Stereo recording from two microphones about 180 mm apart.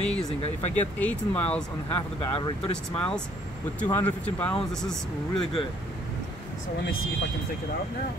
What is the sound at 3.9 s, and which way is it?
Speech, 10° left (ahead or behind).